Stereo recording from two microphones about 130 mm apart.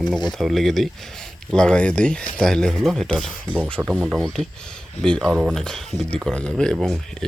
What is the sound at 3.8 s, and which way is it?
Speech, 15° right (ahead or behind).